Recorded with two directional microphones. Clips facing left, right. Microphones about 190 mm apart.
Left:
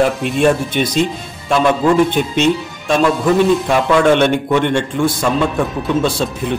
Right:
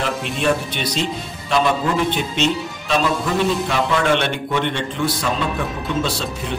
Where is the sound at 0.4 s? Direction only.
50° left (ahead or behind).